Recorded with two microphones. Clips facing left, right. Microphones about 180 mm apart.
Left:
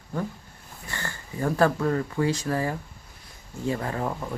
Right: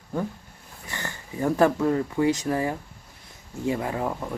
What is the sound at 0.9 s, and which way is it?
Speech, 20° right (ahead or behind).